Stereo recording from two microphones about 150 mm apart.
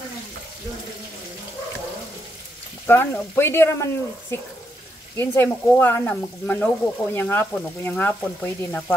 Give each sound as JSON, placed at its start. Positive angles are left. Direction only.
{"t": 2.9, "sound": "frying", "side_deg": 15}